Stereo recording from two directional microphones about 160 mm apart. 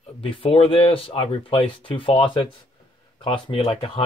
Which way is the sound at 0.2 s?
35° left (ahead or behind).